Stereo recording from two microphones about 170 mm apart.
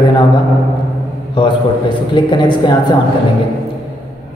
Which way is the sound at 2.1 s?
25° left (ahead or behind).